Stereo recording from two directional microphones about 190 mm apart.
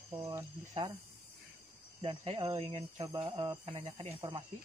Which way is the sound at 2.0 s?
30° right (ahead or behind).